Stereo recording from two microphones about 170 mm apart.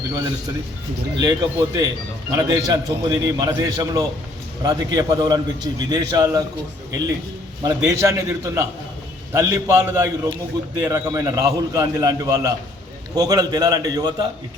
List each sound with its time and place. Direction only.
1.2 s a man's voice: 20° right (ahead or behind)
7.6 s a man's voice: 20° right (ahead or behind)